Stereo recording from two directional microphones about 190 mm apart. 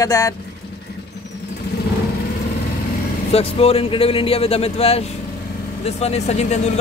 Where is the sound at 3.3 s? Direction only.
30° left (ahead or behind).